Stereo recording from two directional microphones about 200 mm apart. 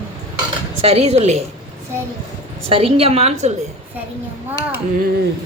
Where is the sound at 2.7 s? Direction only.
30° right (ahead or behind).